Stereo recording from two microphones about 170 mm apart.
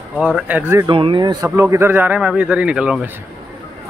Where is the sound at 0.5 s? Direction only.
10° right (ahead or behind).